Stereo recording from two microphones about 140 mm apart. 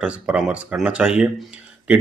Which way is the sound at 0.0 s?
10° right (ahead or behind).